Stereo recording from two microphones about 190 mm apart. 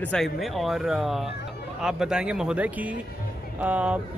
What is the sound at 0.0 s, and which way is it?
Speech, 5° left (ahead or behind).